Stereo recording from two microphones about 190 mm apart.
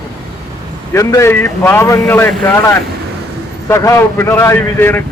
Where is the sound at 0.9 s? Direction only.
15° left (ahead or behind).